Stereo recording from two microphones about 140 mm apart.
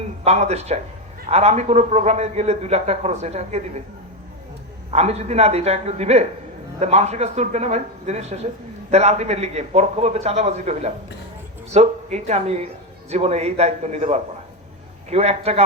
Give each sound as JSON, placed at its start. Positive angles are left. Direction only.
{"t": 0.3, "sound": "a man's voice", "side_deg": -50}
{"t": 4.9, "sound": "a man's voice", "side_deg": -50}